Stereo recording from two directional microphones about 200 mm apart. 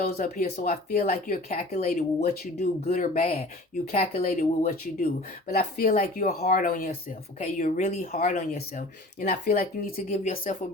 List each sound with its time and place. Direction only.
0.0 s speech: 40° left (ahead or behind)